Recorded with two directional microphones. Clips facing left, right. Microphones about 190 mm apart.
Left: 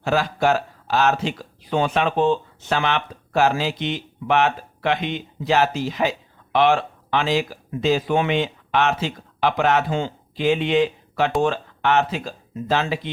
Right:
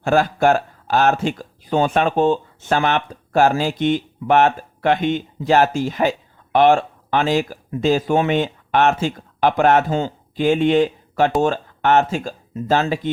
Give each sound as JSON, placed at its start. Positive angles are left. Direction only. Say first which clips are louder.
{"t": 0.0, "sound": "speech", "louder": "right 4 dB", "side_deg": -50}